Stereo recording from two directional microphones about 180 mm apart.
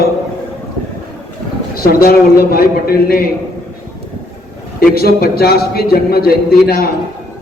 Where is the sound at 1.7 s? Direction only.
55° left (ahead or behind).